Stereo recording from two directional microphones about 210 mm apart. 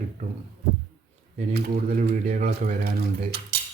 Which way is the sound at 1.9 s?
40° right (ahead or behind).